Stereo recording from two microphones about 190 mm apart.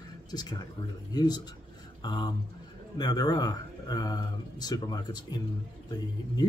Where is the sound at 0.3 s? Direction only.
20° left (ahead or behind).